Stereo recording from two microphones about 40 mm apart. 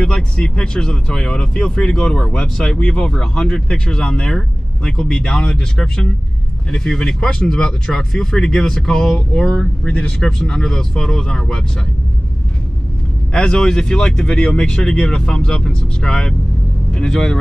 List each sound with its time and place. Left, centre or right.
0.0 s speech: left
6.7 s speech: centre
13.3 s speech: left